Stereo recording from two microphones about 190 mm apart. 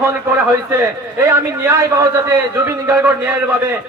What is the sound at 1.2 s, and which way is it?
A man's voice, 15° right (ahead or behind).